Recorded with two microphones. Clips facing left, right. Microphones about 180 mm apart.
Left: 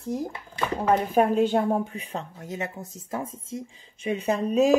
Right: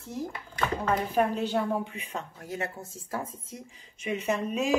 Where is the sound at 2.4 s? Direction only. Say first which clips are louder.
Left 2 dB; 20° left (ahead or behind).